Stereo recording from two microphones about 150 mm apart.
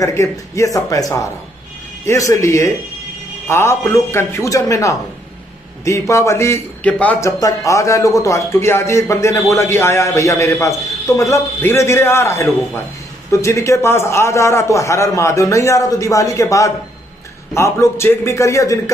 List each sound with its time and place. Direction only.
0.0 s a man's voice: 20° left (ahead or behind)
7.2 s a man's voice: 20° left (ahead or behind)